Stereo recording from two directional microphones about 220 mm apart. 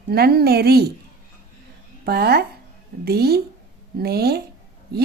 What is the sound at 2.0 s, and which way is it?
A woman's voice, 45° right (ahead or behind).